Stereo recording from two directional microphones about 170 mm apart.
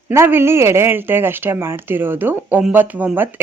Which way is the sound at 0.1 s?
15° right (ahead or behind).